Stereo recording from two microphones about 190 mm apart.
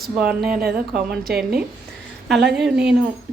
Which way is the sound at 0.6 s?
50° right (ahead or behind).